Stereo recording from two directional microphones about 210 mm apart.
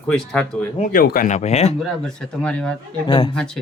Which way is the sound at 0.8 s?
40° left (ahead or behind).